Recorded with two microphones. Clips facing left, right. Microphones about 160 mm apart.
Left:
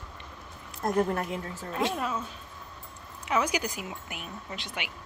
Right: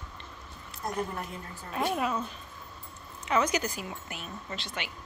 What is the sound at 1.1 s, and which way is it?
Speech, 85° left.